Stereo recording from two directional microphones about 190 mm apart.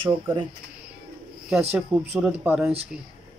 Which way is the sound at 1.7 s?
10° right (ahead or behind).